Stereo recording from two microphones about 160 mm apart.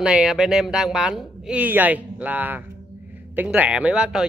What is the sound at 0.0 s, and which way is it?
Speech, 5° right (ahead or behind).